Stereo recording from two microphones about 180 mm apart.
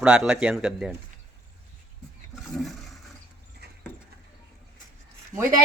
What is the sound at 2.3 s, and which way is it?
Toilet flush, centre (ahead or behind).